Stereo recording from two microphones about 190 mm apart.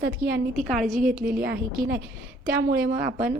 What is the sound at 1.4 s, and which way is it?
Speech, 55° right (ahead or behind).